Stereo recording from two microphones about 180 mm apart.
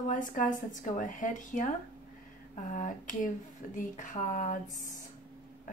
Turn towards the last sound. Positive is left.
turn(degrees=45)  # may be behind; listen again after turning